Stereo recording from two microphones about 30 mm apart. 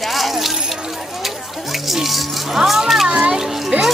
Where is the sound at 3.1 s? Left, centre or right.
Right.